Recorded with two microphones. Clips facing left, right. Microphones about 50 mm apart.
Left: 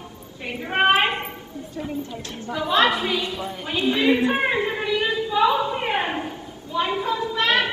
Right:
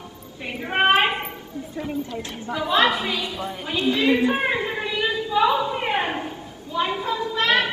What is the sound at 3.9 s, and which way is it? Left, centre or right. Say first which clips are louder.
Speech: even; centre.